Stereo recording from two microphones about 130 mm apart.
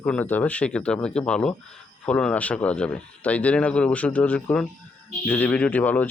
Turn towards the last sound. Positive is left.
turn(degrees=10)  # may be behind; listen again after turning